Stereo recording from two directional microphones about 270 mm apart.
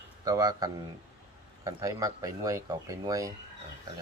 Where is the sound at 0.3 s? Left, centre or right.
Centre.